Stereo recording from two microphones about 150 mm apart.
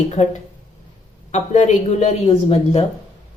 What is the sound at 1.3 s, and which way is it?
Speech, 50° left (ahead or behind).